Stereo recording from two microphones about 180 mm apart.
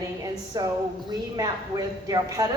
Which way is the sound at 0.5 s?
20° right (ahead or behind).